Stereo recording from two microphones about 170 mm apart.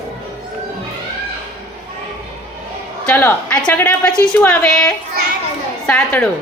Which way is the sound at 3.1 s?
10° left (ahead or behind).